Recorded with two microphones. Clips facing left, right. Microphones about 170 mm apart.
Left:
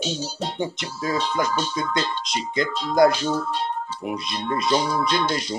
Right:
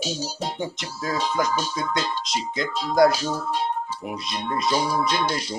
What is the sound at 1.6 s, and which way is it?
Speech, 5° right (ahead or behind).